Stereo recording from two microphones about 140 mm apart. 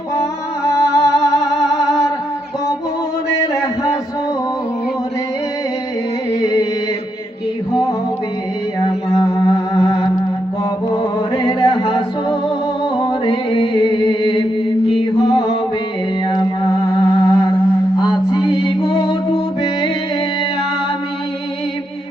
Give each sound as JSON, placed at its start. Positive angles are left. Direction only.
{"t": 0.2, "sound": "music", "side_deg": 20}
{"t": 1.5, "sound": "music", "side_deg": -5}
{"t": 1.9, "sound": "music", "side_deg": 25}
{"t": 9.2, "sound": "music", "side_deg": 25}
{"t": 11.4, "sound": "music", "side_deg": 35}